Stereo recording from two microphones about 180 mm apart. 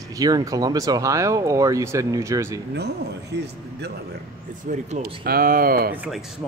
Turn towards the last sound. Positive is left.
turn(degrees=-10)  # may be behind; listen again after turning